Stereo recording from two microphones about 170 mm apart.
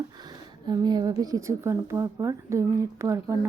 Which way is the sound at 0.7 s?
25° right (ahead or behind).